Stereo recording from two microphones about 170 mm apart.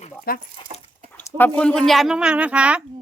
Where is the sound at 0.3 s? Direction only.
60° left (ahead or behind).